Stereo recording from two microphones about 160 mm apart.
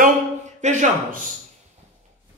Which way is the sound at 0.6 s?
50° right (ahead or behind).